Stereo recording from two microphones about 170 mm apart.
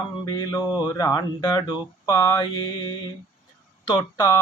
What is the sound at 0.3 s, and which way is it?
Speech, 25° left (ahead or behind).